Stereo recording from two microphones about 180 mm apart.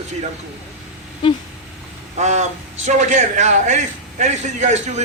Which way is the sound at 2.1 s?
40° right (ahead or behind).